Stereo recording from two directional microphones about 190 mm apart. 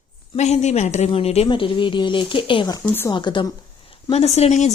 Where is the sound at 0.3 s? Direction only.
35° left (ahead or behind).